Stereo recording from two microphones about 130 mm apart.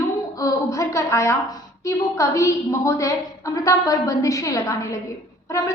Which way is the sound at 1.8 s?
25° left (ahead or behind).